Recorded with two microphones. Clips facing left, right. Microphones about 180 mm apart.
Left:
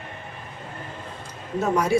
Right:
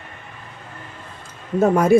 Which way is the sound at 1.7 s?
50° right (ahead or behind).